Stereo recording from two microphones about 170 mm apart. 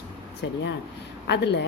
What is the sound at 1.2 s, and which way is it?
Speech, 90° left.